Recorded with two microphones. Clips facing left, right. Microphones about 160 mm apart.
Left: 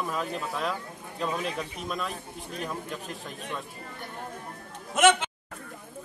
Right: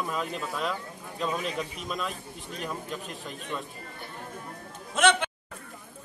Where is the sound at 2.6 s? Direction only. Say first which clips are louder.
Right 3 dB; centre (ahead or behind).